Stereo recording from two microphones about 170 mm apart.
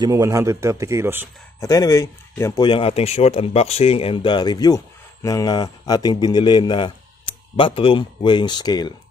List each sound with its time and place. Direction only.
0.0 s speech: 20° right (ahead or behind)
1.6 s speech: 20° left (ahead or behind)